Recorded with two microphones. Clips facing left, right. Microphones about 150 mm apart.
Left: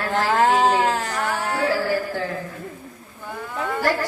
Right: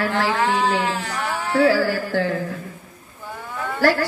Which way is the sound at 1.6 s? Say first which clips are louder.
Right 1 dB; 90° right.